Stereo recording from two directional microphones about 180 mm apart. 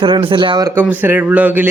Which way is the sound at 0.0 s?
30° right (ahead or behind).